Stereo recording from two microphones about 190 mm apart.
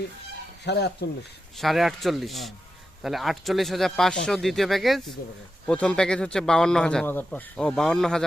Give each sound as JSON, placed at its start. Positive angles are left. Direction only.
{"t": 0.6, "sound": "speech", "side_deg": 60}
{"t": 1.5, "sound": "a man's voice", "side_deg": 0}